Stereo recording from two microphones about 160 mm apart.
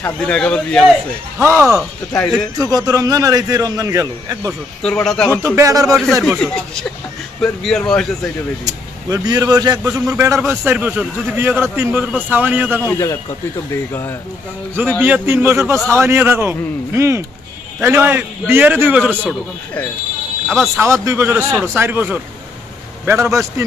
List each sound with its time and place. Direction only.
0.0 s speech: 5° left (ahead or behind)
2.6 s a man's voice: 20° right (ahead or behind)
4.8 s speech: 5° left (ahead or behind)
5.4 s a man's voice: 20° right (ahead or behind)
6.2 s speech: 5° left (ahead or behind)
8.6 s a man's voice: 25° right (ahead or behind)
12.8 s speech: 15° left (ahead or behind)
14.8 s a man's voice: 10° right (ahead or behind)
19.2 s speech: 10° left (ahead or behind)
20.8 s a man's voice: 15° right (ahead or behind)